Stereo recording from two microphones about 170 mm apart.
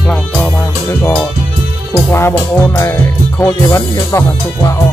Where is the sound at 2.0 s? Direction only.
15° left (ahead or behind).